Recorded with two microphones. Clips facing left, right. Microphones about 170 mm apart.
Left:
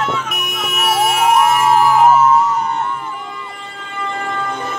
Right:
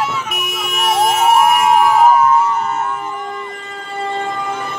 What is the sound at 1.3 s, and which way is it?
Emergency vehicle, 5° right (ahead or behind).